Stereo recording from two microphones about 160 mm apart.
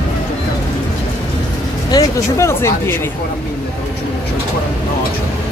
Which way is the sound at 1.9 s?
20° left (ahead or behind).